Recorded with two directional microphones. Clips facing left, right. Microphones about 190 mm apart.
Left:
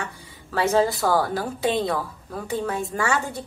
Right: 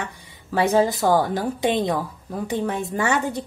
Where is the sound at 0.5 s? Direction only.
15° right (ahead or behind).